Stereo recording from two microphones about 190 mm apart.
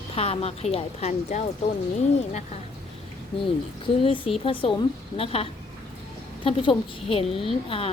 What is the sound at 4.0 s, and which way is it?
Speech, 30° left (ahead or behind).